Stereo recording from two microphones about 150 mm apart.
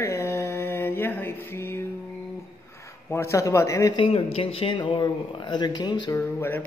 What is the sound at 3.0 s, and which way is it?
Speech, 20° left (ahead or behind).